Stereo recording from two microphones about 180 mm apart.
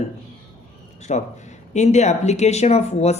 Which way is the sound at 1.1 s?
40° left (ahead or behind).